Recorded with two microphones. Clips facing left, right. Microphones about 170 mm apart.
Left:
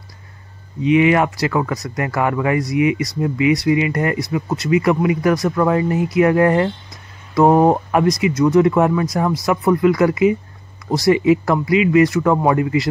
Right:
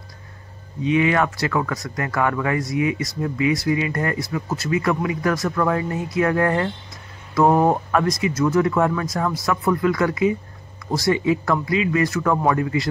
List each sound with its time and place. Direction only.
0.9 s speech: 20° left (ahead or behind)